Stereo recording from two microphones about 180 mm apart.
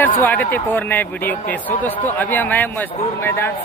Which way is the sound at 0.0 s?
10° left (ahead or behind).